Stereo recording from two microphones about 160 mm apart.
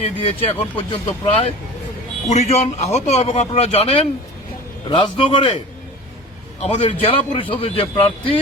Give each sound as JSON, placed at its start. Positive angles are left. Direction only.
{"t": 0.0, "sound": "a man's voice", "side_deg": 35}
{"t": 4.9, "sound": "a man's voice", "side_deg": 30}
{"t": 6.6, "sound": "a man's voice", "side_deg": 40}